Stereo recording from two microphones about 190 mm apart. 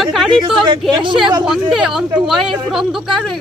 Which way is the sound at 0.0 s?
Centre (ahead or behind).